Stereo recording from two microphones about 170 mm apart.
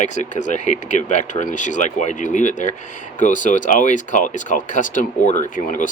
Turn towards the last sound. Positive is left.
turn(degrees=50)  # may be behind; listen again after turning